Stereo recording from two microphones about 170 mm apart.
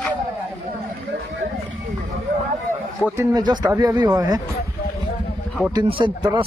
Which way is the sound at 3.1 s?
20° right (ahead or behind).